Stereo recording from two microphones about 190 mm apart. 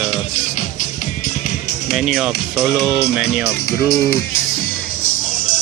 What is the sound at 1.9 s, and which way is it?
Speech, centre (ahead or behind).